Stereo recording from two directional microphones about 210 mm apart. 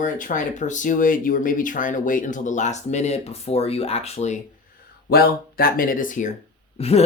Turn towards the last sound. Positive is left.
turn(degrees=30)  # may be behind; listen again after turning